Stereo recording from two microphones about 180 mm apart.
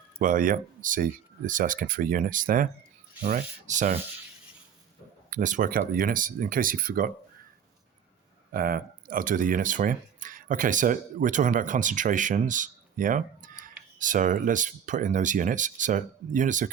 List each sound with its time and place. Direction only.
0.2 s speech: 50° right (ahead or behind)
5.3 s speech: 45° right (ahead or behind)
8.5 s speech: 55° right (ahead or behind)